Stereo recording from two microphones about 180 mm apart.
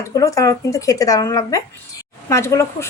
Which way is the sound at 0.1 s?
20° left (ahead or behind).